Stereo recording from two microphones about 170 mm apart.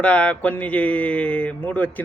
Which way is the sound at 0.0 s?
10° left (ahead or behind).